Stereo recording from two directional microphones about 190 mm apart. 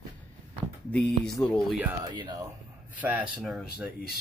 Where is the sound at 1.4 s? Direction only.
5° left (ahead or behind).